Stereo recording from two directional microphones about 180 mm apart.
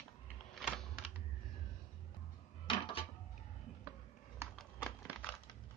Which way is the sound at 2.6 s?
30° left (ahead or behind).